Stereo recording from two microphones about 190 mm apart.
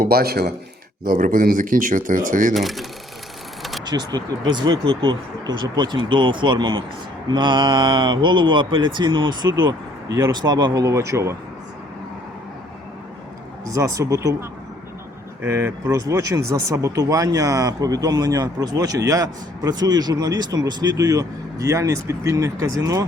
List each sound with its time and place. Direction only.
0.0 s speech: 55° right (ahead or behind)
2.6 s speech: centre (ahead or behind)
3.6 s vehicle: centre (ahead or behind)
3.8 s speech: 20° right (ahead or behind)
13.7 s speech: 15° right (ahead or behind)
15.4 s speech: 15° right (ahead or behind)